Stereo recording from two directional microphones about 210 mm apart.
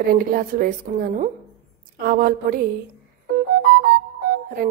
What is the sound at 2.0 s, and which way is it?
Speech, 40° right (ahead or behind).